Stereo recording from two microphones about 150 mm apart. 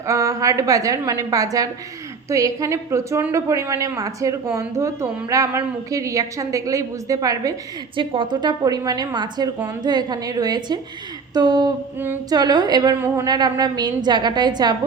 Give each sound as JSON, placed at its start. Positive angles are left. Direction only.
{"t": 0.0, "sound": "a woman's voice", "side_deg": -20}
{"t": 7.9, "sound": "a woman's voice", "side_deg": -35}